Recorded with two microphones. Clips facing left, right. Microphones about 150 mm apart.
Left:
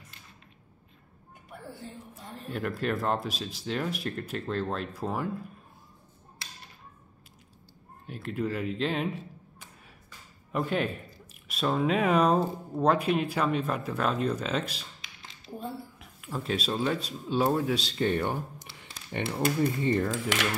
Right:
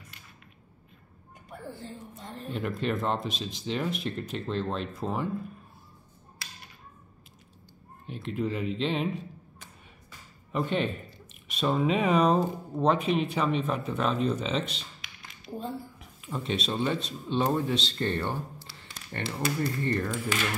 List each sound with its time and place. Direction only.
1.7 s speech: 5° left (ahead or behind)
8.1 s speech: centre (ahead or behind)
10.5 s speech: 5° left (ahead or behind)
20.1 s speech: 85° left